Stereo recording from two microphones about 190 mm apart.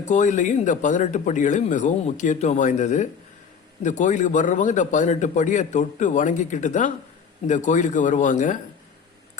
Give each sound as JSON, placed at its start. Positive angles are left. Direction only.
{"t": 0.0, "sound": "speech", "side_deg": 40}